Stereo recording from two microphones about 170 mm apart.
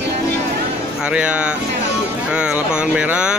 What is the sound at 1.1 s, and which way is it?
Speech, 5° right (ahead or behind).